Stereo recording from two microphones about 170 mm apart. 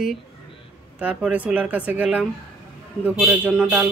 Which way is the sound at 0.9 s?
10° right (ahead or behind).